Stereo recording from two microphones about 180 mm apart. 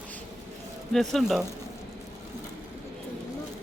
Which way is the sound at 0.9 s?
Centre (ahead or behind).